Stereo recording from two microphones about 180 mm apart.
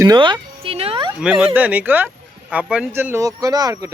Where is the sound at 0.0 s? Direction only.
25° right (ahead or behind).